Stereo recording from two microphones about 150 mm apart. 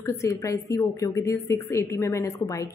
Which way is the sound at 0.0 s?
20° left (ahead or behind).